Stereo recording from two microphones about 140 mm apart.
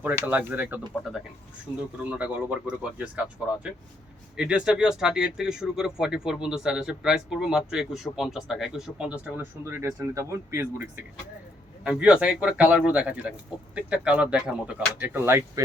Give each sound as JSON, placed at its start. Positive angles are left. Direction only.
{"t": 0.0, "sound": "speech", "side_deg": -15}
{"t": 2.0, "sound": "speech", "side_deg": -10}
{"t": 11.8, "sound": "speech", "side_deg": -5}